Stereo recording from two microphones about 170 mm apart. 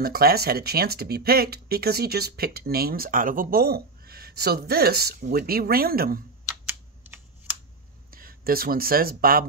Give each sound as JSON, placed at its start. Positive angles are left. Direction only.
{"t": 0.0, "sound": "speech", "side_deg": -65}
{"t": 8.1, "sound": "speech", "side_deg": -60}